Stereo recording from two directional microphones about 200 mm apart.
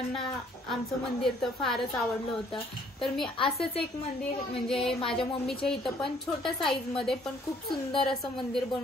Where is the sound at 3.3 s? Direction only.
25° left (ahead or behind).